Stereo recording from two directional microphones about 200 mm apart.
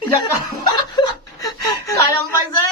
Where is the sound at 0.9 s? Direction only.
20° left (ahead or behind).